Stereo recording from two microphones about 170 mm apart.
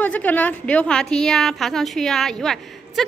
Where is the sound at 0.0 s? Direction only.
10° left (ahead or behind).